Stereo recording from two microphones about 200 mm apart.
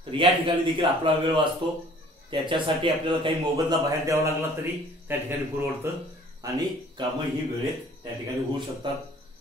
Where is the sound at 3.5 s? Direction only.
15° right (ahead or behind).